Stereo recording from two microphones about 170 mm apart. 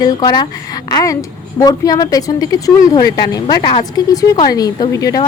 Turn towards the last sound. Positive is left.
turn(degrees=20)  # may be behind; listen again after turning